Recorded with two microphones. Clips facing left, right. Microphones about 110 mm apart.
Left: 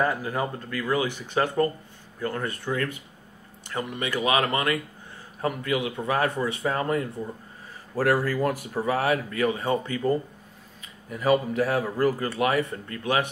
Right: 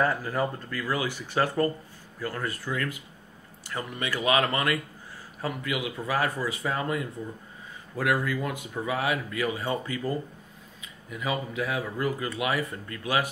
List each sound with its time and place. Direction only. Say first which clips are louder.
0.0 s speech: even; 15° left (ahead or behind)
5.4 s speech: left 4 dB; 30° left (ahead or behind)
11.1 s speech: left 8 dB; 45° left (ahead or behind)